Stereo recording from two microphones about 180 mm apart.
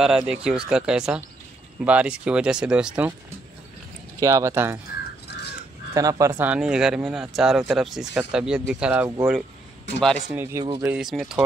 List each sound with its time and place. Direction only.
0.0 s speech: 5° right (ahead or behind)
4.2 s speech: 15° right (ahead or behind)
5.9 s speech: 20° right (ahead or behind)
10.3 s speech: 10° right (ahead or behind)
10.6 s speech: 25° right (ahead or behind)
10.9 s speech: centre (ahead or behind)